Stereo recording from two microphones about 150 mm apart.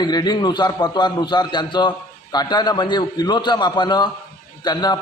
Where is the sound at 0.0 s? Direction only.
30° left (ahead or behind).